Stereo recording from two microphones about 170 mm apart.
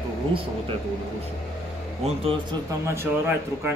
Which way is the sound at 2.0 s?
30° right (ahead or behind).